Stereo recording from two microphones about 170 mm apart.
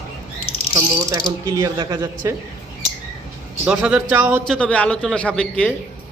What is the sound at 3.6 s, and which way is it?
Speech, 5° right (ahead or behind).